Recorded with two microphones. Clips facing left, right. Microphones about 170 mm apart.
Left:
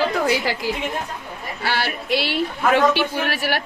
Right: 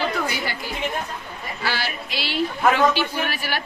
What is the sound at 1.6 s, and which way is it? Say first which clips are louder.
Speech: left 4 dB; 60° left (ahead or behind).